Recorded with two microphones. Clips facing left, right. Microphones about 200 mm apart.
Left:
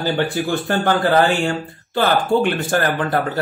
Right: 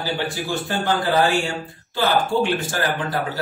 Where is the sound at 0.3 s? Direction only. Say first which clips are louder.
Left 5 dB; 55° left (ahead or behind).